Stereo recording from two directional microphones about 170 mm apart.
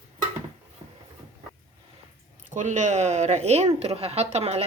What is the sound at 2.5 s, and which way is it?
Speech, 45° right (ahead or behind).